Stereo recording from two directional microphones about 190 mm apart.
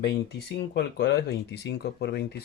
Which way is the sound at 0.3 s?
60° left (ahead or behind).